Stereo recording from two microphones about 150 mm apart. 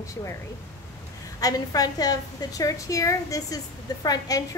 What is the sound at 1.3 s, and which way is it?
A woman's voice, 25° left (ahead or behind).